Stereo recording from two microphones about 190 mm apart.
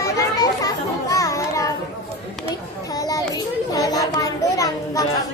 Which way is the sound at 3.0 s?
20° left (ahead or behind).